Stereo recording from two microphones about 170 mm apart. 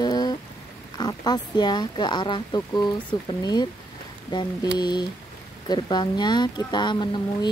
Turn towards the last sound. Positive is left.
turn(degrees=25)  # may be behind; listen again after turning